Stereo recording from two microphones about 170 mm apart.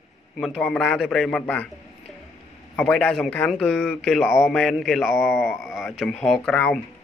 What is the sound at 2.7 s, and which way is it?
Speech, 5° left (ahead or behind).